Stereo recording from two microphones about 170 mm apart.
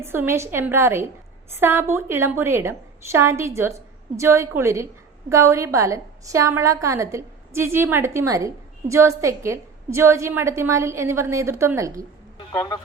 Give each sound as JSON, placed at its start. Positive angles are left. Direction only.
{"t": 0.0, "sound": "a woman's voice", "side_deg": -15}
{"t": 12.5, "sound": "speech", "side_deg": 25}